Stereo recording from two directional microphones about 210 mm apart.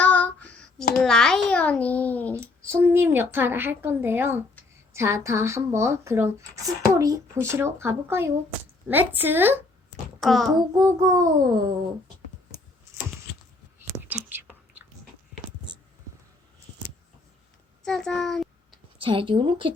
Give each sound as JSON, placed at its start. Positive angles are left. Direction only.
{"t": 0.0, "sound": "child singing", "side_deg": 5}
{"t": 2.3, "sound": "a woman's voice", "side_deg": -10}
{"t": 10.2, "sound": "child singing", "side_deg": 0}
{"t": 10.5, "sound": "a woman's voice", "side_deg": -15}
{"t": 14.1, "sound": "whispering", "side_deg": -10}
{"t": 17.8, "sound": "a child's voice", "side_deg": 5}
{"t": 18.9, "sound": "speech", "side_deg": -25}